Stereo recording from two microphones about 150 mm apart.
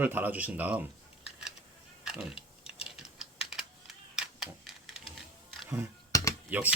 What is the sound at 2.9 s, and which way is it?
Typing, 5° right (ahead or behind).